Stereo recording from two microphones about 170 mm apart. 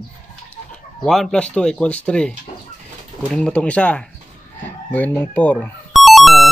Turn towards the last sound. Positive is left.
turn(degrees=0)  # may be behind; listen again after turning